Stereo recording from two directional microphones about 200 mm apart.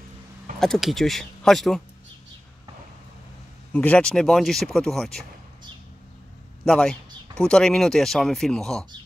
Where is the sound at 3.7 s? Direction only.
5° left (ahead or behind).